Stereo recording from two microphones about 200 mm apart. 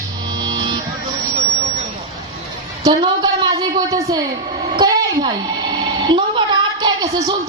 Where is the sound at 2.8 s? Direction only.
20° right (ahead or behind).